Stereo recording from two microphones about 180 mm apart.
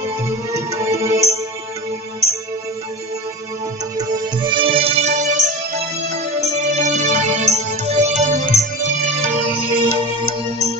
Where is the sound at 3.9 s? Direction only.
25° right (ahead or behind); by 8.4 s 40° right (ahead or behind).